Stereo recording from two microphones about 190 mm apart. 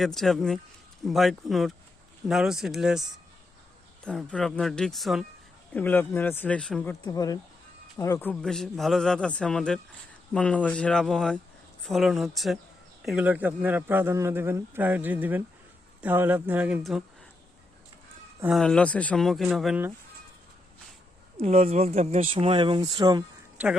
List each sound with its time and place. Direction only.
0.0 s a man's voice: centre (ahead or behind)
4.0 s a man's voice: 5° left (ahead or behind)
7.0 s speech: 20° left (ahead or behind)
8.3 s a man's voice: 5° left (ahead or behind)
18.5 s a man's voice: 5° left (ahead or behind)
21.4 s speech: 35° right (ahead or behind)